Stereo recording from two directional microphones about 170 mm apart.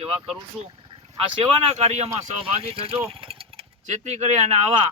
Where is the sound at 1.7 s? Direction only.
40° right (ahead or behind).